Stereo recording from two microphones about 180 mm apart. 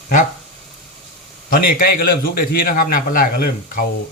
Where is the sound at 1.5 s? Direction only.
55° left (ahead or behind).